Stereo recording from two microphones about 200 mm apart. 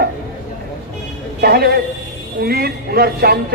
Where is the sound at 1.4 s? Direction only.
50° right (ahead or behind).